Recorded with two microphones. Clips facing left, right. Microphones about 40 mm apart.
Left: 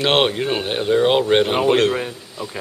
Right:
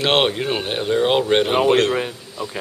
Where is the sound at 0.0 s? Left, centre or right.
Centre.